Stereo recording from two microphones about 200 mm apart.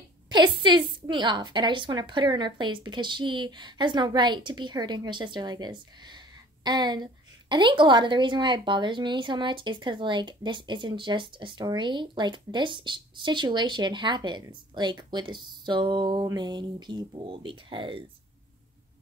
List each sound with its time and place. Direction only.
0.3 s a woman's voice: 25° right (ahead or behind)